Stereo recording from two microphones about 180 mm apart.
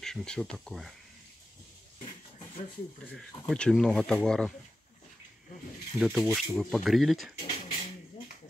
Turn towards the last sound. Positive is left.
turn(degrees=30)  # may be behind; listen again after turning